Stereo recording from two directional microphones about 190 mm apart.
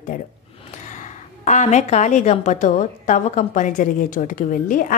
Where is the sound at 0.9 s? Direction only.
40° left (ahead or behind).